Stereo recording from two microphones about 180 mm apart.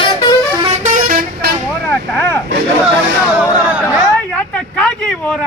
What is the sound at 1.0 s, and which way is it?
Vehicle, 55° right (ahead or behind).